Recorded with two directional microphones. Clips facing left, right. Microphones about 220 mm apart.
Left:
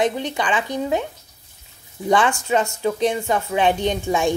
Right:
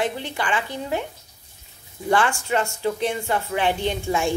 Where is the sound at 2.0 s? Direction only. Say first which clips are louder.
Left 3 dB; 20° left (ahead or behind).